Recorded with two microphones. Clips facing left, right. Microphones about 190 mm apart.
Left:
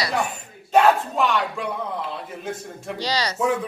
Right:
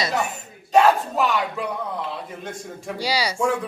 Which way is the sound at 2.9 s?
10° right (ahead or behind).